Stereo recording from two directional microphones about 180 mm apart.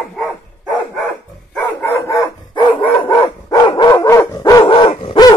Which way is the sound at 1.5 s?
15° left (ahead or behind).